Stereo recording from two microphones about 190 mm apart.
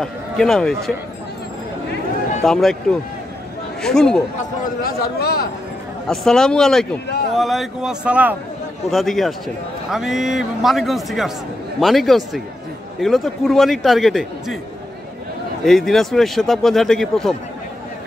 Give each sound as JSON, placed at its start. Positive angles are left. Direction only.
{"t": 0.0, "sound": "a man's voice", "side_deg": 5}
{"t": 2.4, "sound": "speech", "side_deg": 0}
{"t": 4.8, "sound": "a man's voice", "side_deg": 55}
{"t": 6.0, "sound": "speech", "side_deg": 5}
{"t": 15.6, "sound": "speech", "side_deg": 0}